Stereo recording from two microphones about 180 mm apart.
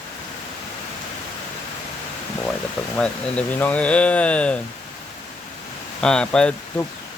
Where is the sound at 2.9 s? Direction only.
5° left (ahead or behind).